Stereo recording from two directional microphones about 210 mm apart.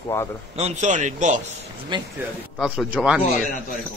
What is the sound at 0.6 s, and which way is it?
Speech, 35° right (ahead or behind).